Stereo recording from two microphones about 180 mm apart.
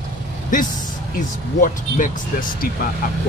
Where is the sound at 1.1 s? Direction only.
50° left (ahead or behind).